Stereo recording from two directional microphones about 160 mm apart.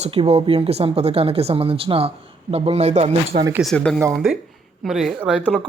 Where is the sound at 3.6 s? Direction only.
5° left (ahead or behind).